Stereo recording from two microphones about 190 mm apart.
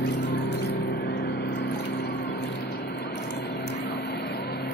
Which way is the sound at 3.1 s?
65° left (ahead or behind).